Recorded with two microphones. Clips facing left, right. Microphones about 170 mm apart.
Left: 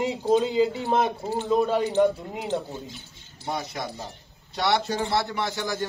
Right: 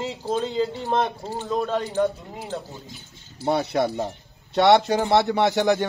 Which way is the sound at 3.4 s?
65° right (ahead or behind).